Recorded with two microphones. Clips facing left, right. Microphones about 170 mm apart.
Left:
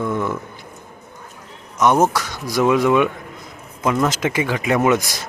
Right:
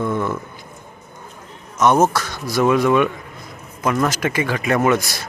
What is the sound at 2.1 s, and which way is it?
Speech, 15° left (ahead or behind).